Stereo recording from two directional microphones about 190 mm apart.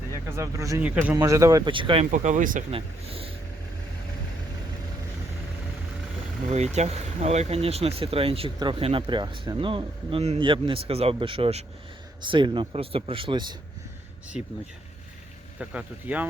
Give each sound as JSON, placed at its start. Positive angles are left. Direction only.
{"t": 0.3, "sound": "speech", "side_deg": -15}
{"t": 0.8, "sound": "speech", "side_deg": -5}
{"t": 2.0, "sound": "speech", "side_deg": -40}
{"t": 2.7, "sound": "speech", "side_deg": -30}
{"t": 6.5, "sound": "speech", "side_deg": -35}
{"t": 15.5, "sound": "speech", "side_deg": -5}